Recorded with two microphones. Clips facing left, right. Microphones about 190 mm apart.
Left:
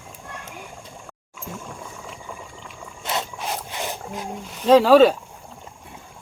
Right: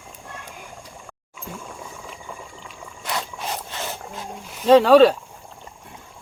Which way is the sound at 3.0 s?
25° left (ahead or behind).